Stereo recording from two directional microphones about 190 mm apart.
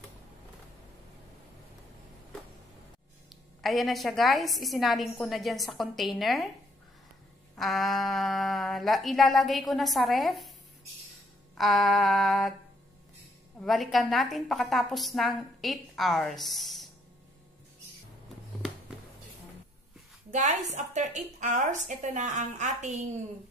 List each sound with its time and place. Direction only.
3.6 s a woman's voice: centre (ahead or behind)
7.5 s a woman's voice: centre (ahead or behind)
11.5 s a woman's voice: centre (ahead or behind)
13.6 s a woman's voice: centre (ahead or behind)
20.2 s a woman's voice: 40° right (ahead or behind)